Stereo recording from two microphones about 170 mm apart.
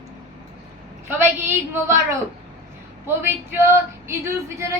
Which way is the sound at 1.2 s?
15° right (ahead or behind).